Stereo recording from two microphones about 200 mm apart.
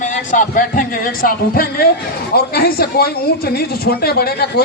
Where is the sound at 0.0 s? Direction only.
40° left (ahead or behind).